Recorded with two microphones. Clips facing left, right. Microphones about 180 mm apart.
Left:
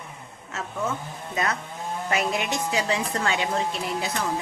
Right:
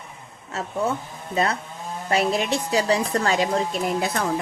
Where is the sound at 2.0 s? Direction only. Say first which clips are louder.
Right 5 dB; 35° right (ahead or behind).